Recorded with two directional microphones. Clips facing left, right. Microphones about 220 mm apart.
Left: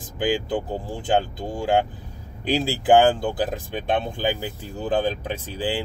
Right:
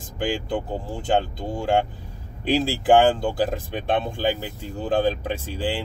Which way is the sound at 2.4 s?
Centre (ahead or behind).